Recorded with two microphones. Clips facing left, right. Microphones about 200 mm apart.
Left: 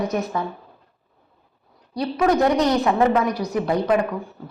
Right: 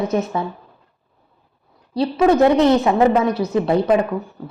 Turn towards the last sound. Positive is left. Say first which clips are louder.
# right 4 dB
turn(degrees=-25)  # may be behind; listen again after turning